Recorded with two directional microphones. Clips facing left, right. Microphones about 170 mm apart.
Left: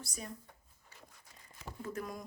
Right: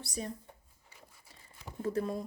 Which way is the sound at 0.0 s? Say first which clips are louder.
Right 6 dB; 35° right (ahead or behind).